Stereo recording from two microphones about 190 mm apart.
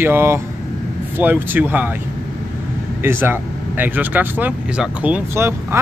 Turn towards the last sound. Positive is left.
turn(degrees=-15)  # may be behind; listen again after turning